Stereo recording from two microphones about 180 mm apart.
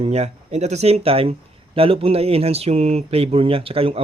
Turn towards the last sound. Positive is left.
turn(degrees=-30)  # may be behind; listen again after turning